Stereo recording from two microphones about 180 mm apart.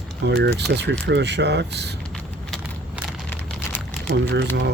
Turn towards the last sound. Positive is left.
turn(degrees=-75)  # may be behind; listen again after turning